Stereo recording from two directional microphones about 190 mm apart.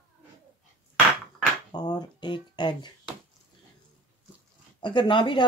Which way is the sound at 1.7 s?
20° left (ahead or behind).